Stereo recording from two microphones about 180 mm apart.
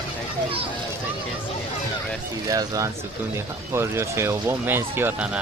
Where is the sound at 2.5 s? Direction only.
20° right (ahead or behind).